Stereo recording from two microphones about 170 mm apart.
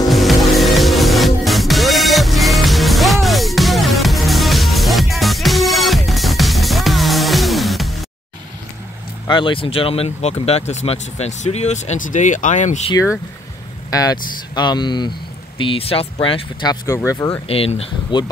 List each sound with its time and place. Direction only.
0.1 s music: centre (ahead or behind)
9.3 s speech: 30° left (ahead or behind)
13.8 s speech: 20° left (ahead or behind)
16.8 s speech: 15° left (ahead or behind)
17.5 s speech: 35° left (ahead or behind)